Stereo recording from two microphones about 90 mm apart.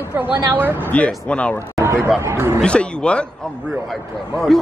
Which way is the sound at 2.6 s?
10° left (ahead or behind).